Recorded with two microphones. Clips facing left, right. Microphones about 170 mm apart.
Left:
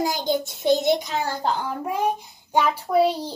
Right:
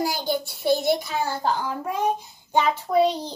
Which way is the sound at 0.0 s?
20° left (ahead or behind).